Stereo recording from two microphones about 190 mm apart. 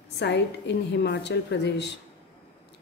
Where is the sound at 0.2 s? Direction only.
65° left (ahead or behind).